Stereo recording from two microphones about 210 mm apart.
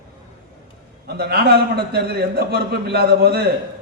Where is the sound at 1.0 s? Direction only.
50° right (ahead or behind).